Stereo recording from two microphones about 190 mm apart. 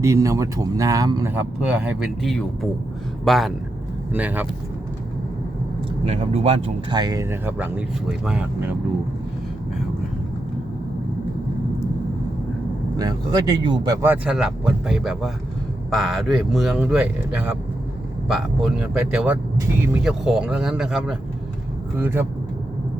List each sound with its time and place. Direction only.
0.0 s speech: 15° right (ahead or behind)
6.1 s speech: 35° right (ahead or behind); by 8.7 s 5° right (ahead or behind)
13.0 s speech: 20° right (ahead or behind)
14.1 s speech: 5° right (ahead or behind)